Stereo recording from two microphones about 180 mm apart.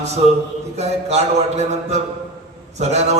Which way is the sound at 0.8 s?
40° right (ahead or behind).